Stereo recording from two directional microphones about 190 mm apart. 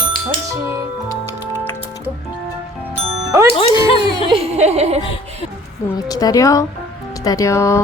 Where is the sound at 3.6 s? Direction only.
30° left (ahead or behind).